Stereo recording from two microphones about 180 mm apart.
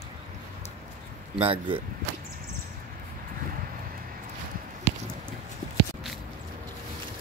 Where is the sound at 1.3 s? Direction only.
30° right (ahead or behind).